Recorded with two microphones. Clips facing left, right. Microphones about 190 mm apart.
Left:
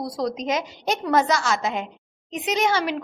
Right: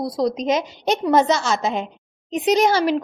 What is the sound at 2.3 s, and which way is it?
Speech, 35° right (ahead or behind).